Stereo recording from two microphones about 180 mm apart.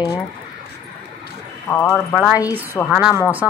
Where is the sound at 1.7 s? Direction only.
10° left (ahead or behind).